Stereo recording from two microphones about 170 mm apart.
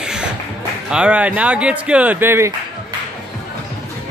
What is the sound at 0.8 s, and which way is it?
Speech, 5° right (ahead or behind).